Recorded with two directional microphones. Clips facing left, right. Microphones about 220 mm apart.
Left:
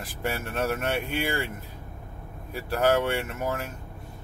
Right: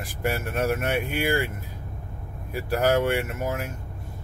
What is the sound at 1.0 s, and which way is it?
Speech, 50° right (ahead or behind).